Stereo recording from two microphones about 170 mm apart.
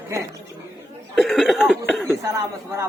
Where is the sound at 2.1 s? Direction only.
15° right (ahead or behind).